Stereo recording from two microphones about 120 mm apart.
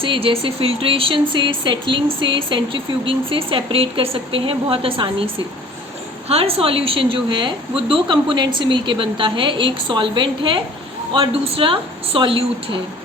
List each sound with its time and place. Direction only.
0.0 s speech: 45° right (ahead or behind)